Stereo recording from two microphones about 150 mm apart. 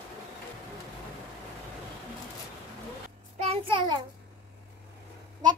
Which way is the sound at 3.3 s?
40° right (ahead or behind).